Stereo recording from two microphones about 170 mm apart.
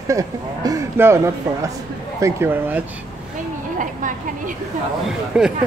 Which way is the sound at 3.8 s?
50° right (ahead or behind).